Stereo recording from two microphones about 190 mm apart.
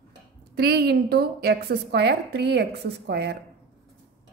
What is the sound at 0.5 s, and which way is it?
A woman's voice, 55° right (ahead or behind).